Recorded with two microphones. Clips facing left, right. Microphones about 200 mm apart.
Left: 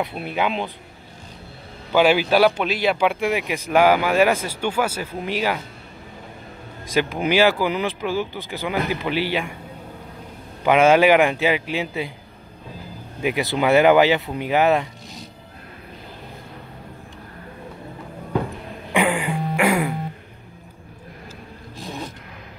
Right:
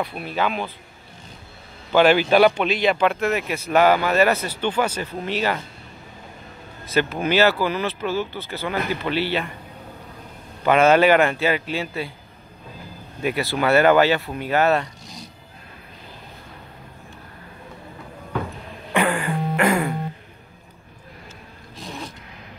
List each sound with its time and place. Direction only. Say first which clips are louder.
0.0 s speech: left 1 dB; 20° left (ahead or behind)
1.9 s speech: right 1 dB; 10° left (ahead or behind)
6.9 s speech: left 1 dB; 15° left (ahead or behind)
10.6 s speech: left 1 dB; 10° left (ahead or behind)
13.2 s speech: left 1 dB; 15° left (ahead or behind)
18.9 s throat clearing: left 1 dB; 15° left (ahead or behind)